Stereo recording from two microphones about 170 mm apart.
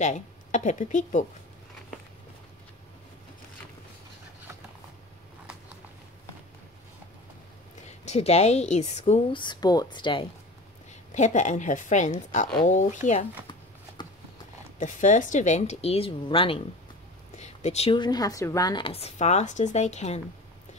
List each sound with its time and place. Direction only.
0.0 s speech: 45° left (ahead or behind)
8.0 s speech: 40° left (ahead or behind)
11.1 s speech: 45° left (ahead or behind)
14.8 s speech: 45° left (ahead or behind); by 16.6 s 30° left (ahead or behind)
17.4 s a sound: 40° left (ahead or behind)
17.9 s speech: 25° left (ahead or behind); by 20.2 s 40° left (ahead or behind)